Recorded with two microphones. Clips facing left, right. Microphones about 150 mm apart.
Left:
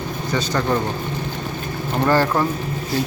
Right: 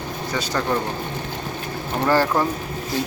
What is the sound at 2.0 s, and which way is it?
Speech, 10° right (ahead or behind).